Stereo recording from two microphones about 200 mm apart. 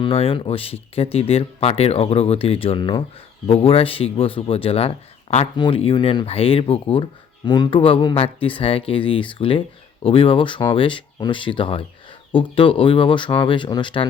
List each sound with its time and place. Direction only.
0.0 s speech: 25° left (ahead or behind)